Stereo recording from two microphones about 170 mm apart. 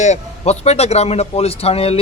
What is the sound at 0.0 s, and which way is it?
A man's voice, 40° left (ahead or behind).